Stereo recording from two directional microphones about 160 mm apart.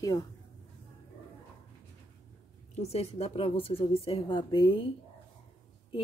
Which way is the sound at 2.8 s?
40° left (ahead or behind).